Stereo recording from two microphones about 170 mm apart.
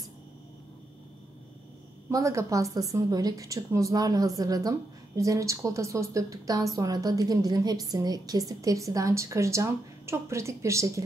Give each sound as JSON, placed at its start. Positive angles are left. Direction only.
{"t": 2.0, "sound": "a woman's voice", "side_deg": -20}